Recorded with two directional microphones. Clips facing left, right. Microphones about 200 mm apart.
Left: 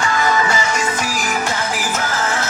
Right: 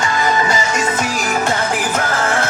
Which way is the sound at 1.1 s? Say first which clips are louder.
Right 3 dB; 50° right (ahead or behind).